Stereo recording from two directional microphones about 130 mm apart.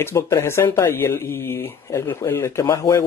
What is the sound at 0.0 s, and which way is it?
Speech, 20° left (ahead or behind).